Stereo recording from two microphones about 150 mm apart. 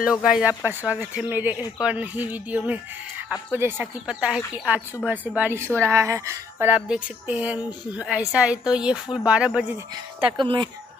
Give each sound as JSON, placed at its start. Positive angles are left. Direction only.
{"t": 0.0, "sound": "speech", "side_deg": -5}
{"t": 10.3, "sound": "speech", "side_deg": -30}